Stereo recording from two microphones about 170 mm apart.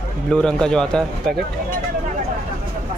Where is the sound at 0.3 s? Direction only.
5° left (ahead or behind).